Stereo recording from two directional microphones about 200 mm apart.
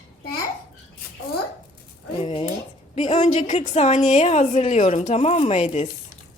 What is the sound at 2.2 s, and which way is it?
A woman's voice, 30° left (ahead or behind).